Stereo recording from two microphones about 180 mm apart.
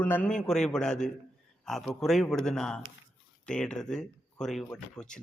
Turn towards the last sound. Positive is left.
turn(degrees=5)  # may be behind; listen again after turning